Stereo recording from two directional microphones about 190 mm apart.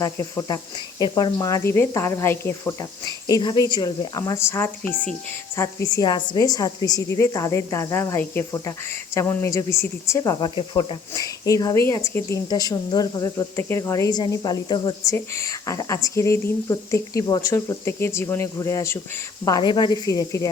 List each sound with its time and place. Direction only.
0.0 s speech: 15° left (ahead or behind)